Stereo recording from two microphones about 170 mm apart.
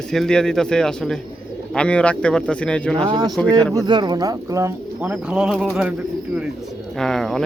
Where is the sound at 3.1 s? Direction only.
25° right (ahead or behind); by 5.9 s 5° right (ahead or behind).